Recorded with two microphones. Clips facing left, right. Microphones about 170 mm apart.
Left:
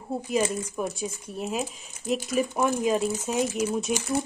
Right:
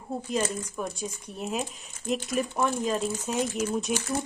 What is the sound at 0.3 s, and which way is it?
Speech, 10° left (ahead or behind).